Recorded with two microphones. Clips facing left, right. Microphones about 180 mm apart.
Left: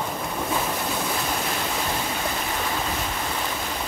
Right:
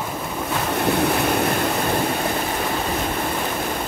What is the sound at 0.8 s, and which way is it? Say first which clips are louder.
Waves: right 8 dB; 65° right (ahead or behind).